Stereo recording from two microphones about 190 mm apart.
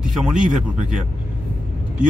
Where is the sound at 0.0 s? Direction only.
5° right (ahead or behind).